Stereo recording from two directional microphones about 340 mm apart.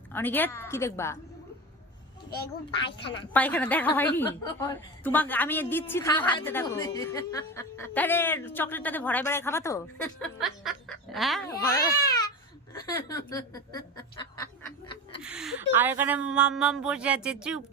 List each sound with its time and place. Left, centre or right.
0.1 s a woman's voice: centre
2.3 s a child's voice: left
3.3 s a woman's voice: centre
15.2 s speech: centre